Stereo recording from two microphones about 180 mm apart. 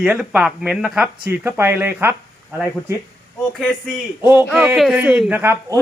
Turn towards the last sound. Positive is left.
turn(degrees=-10)  # may be behind; listen again after turning